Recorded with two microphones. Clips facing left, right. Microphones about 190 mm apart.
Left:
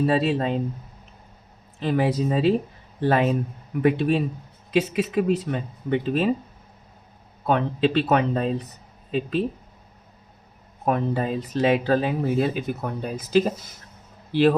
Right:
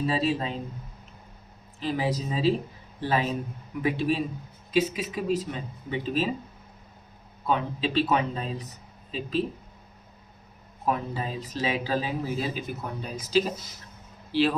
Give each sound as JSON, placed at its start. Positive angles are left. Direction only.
{"t": 0.0, "sound": "speech", "side_deg": 60}
{"t": 1.8, "sound": "speech", "side_deg": 60}
{"t": 7.4, "sound": "speech", "side_deg": 60}
{"t": 10.8, "sound": "speech", "side_deg": 55}